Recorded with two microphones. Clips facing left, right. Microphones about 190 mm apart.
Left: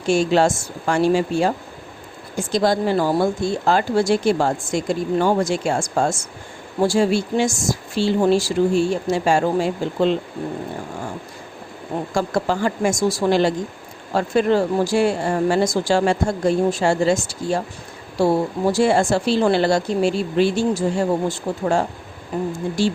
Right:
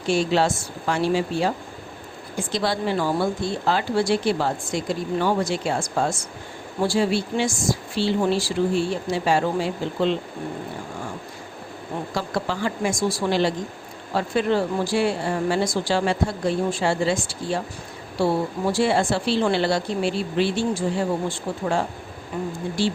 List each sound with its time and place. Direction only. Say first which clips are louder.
0.1 s a woman's voice: left 4 dB; 45° left (ahead or behind)
12.1 s a woman's voice: left 6 dB; 45° left (ahead or behind)